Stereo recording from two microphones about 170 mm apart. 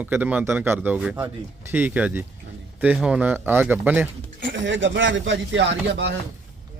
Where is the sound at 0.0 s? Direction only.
10° right (ahead or behind).